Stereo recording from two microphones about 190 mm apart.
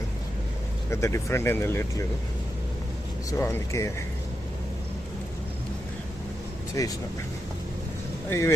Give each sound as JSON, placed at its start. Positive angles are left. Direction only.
{"t": 0.9, "sound": "speech", "side_deg": 15}
{"t": 3.2, "sound": "speech", "side_deg": 15}
{"t": 6.8, "sound": "speech", "side_deg": 20}
{"t": 8.3, "sound": "speech", "side_deg": 15}